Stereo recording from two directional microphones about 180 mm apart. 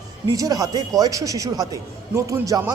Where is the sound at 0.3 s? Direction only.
20° right (ahead or behind).